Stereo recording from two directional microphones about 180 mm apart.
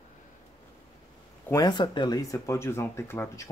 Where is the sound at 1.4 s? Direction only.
20° left (ahead or behind).